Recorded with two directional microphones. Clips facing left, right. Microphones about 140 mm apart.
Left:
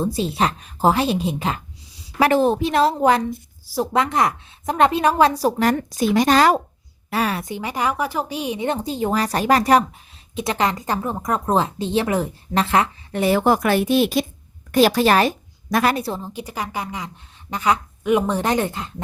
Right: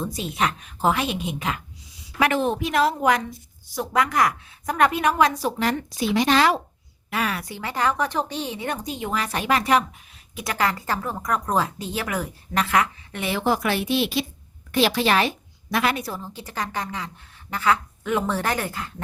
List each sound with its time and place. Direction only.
0.0 s a woman's voice: 30° left (ahead or behind)
7.1 s speech: 35° left (ahead or behind)
10.3 s a woman's voice: 25° left (ahead or behind); by 16.0 s 40° left (ahead or behind)
16.0 s speech: 20° left (ahead or behind)